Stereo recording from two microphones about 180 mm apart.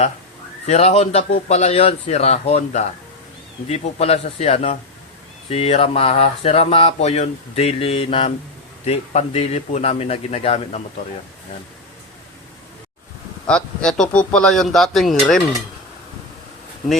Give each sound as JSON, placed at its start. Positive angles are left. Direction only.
{"t": 0.7, "sound": "speech", "side_deg": 35}
{"t": 13.5, "sound": "speech", "side_deg": 5}